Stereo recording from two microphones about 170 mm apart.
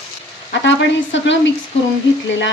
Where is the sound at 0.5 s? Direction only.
90° left.